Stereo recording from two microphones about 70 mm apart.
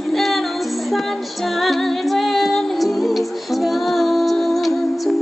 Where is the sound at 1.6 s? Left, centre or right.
Centre.